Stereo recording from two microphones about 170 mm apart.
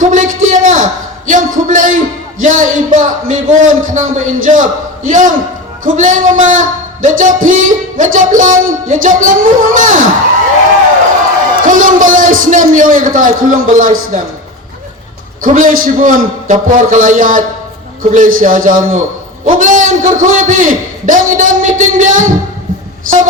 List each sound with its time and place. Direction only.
0.0 s a sound: 50° right (ahead or behind)
1.3 s speech: 50° right (ahead or behind)
11.6 s speech: 50° right (ahead or behind)
15.4 s speech: 50° right (ahead or behind)